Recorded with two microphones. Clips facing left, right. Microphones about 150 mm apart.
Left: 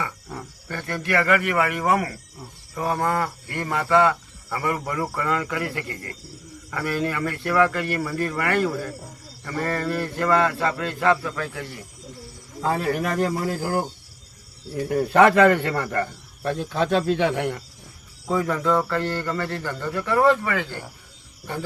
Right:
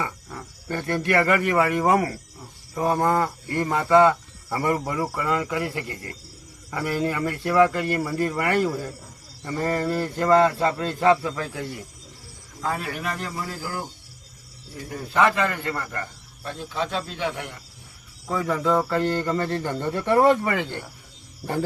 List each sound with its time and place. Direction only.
0.7 s speech: 20° right (ahead or behind)
4.9 s speech: 10° right (ahead or behind)
12.6 s speech: 35° left (ahead or behind); by 13.8 s 50° left (ahead or behind)
15.1 s speech: 65° left (ahead or behind)
18.3 s speech: centre (ahead or behind); by 20.8 s 25° right (ahead or behind)